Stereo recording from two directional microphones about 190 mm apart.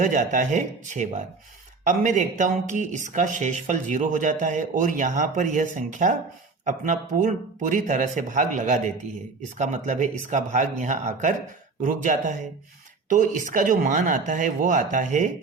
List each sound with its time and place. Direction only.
0.0 s speech: 40° right (ahead or behind)